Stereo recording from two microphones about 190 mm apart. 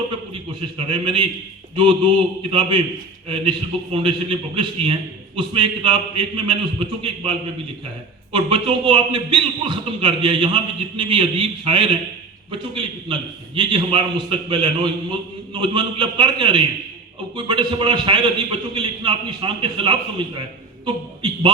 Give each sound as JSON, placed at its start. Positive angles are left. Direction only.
{"t": 0.9, "sound": "a man's voice", "side_deg": -25}